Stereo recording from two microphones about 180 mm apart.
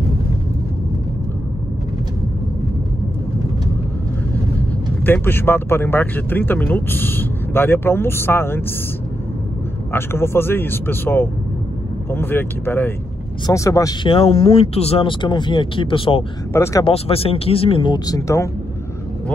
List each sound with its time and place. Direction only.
4.6 s speech: 10° left (ahead or behind)
9.9 s speech: 15° left (ahead or behind)
14.0 s speech: 30° left (ahead or behind)
16.5 s speech: 15° left (ahead or behind)
16.8 s speech: 30° left (ahead or behind); by 18.5 s 15° left (ahead or behind)